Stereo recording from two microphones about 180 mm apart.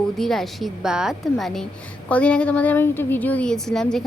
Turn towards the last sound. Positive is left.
turn(degrees=0)  # may be behind; listen again after turning